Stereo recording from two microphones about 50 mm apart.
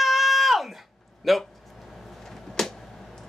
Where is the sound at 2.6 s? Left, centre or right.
Centre.